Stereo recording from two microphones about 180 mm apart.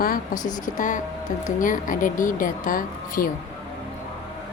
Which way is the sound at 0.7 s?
45° left (ahead or behind).